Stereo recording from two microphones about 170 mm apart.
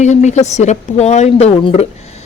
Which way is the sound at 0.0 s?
45° left (ahead or behind).